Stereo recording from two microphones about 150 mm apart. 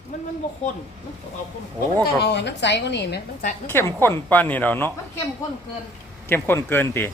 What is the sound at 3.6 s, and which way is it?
A woman's voice, 15° left (ahead or behind).